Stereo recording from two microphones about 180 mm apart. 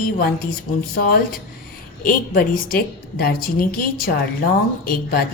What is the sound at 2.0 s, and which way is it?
A woman's voice, 55° left (ahead or behind).